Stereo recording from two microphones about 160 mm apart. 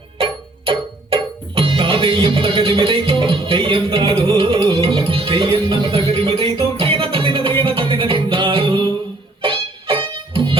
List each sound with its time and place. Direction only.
0.2 s music: 35° right (ahead or behind)